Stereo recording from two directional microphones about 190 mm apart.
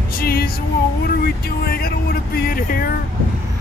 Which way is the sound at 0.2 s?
55° left (ahead or behind).